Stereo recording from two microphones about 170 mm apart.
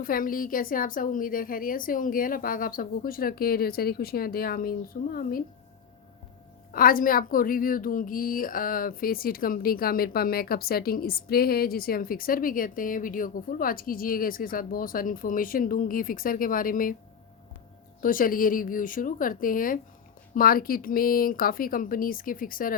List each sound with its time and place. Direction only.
0.0 s a woman's voice: 55° left (ahead or behind)
6.7 s a woman's voice: 55° left (ahead or behind)
18.0 s a woman's voice: 55° left (ahead or behind)